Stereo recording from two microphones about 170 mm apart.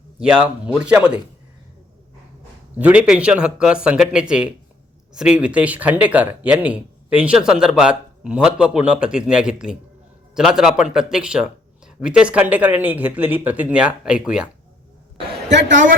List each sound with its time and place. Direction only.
0.2 s speech: 5° right (ahead or behind)
2.7 s speech: 10° right (ahead or behind)
15.4 s a woman's voice: 90° right